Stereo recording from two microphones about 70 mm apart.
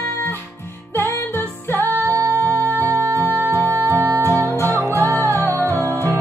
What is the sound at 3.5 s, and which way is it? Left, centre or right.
Music, left.